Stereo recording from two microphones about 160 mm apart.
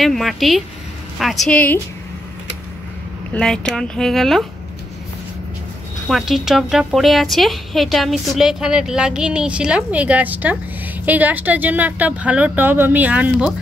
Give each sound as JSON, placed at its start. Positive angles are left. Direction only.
{"t": 0.0, "sound": "a woman's voice", "side_deg": 0}
{"t": 3.3, "sound": "a woman's voice", "side_deg": 5}
{"t": 6.0, "sound": "a woman's voice", "side_deg": 0}